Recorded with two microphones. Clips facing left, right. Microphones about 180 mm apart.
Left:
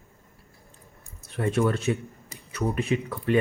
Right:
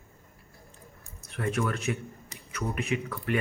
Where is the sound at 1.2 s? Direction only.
30° left (ahead or behind).